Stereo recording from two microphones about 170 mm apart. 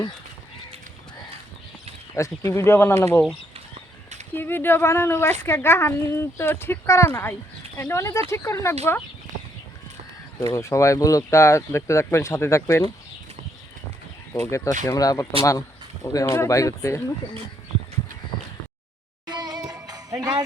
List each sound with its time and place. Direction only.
2.1 s speech: 15° left (ahead or behind)
4.4 s speech: 10° left (ahead or behind)
10.4 s speech: 20° left (ahead or behind)
14.3 s speech: 15° left (ahead or behind)
19.3 s music: 25° right (ahead or behind)